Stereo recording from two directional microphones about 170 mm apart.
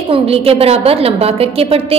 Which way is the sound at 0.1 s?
35° right (ahead or behind).